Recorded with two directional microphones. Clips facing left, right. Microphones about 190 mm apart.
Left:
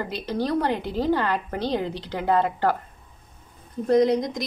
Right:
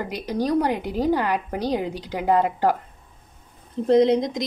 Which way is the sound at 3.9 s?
25° right (ahead or behind).